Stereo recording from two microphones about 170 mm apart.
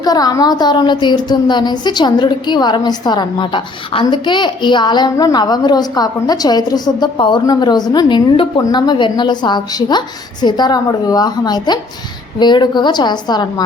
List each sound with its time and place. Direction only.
0.0 s a woman's voice: 20° left (ahead or behind)